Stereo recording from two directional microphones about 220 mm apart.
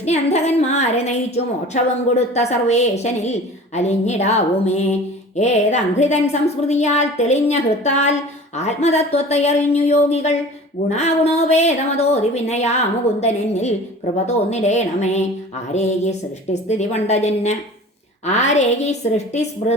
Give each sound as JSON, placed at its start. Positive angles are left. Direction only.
{"t": 0.0, "sound": "a woman's voice", "side_deg": 30}